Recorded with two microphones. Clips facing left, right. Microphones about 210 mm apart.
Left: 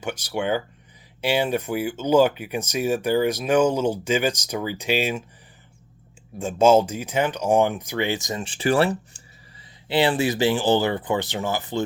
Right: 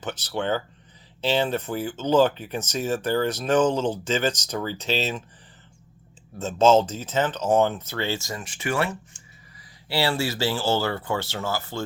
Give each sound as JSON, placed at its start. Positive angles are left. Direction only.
{"t": 0.0, "sound": "speech", "side_deg": 10}
{"t": 6.4, "sound": "speech", "side_deg": 10}
{"t": 9.9, "sound": "speech", "side_deg": 20}